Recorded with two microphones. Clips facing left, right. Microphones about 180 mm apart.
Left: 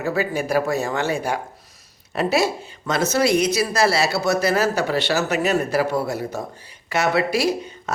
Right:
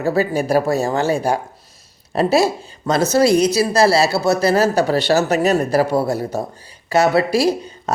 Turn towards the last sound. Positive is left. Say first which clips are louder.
# right 4 dB
turn(degrees=-35)  # may be behind; listen again after turning